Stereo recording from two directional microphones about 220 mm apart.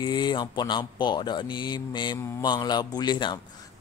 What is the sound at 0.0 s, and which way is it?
A man's voice, 20° left (ahead or behind).